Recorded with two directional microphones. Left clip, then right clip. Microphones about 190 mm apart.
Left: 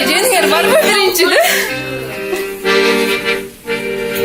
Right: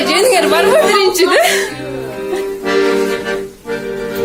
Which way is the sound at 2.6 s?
40° right (ahead or behind).